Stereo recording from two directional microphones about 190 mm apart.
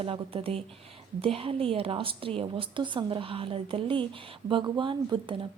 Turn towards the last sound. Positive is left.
turn(degrees=-25)  # may be behind; listen again after turning